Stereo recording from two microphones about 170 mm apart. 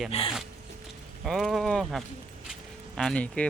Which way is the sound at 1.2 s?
Centre (ahead or behind).